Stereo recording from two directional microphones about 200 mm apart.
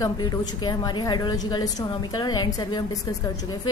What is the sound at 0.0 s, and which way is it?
A woman's voice, 20° left (ahead or behind).